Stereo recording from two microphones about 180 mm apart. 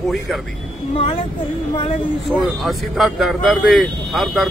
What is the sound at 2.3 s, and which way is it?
A man's voice, centre (ahead or behind).